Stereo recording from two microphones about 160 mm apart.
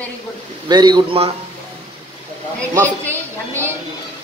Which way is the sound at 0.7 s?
25° right (ahead or behind).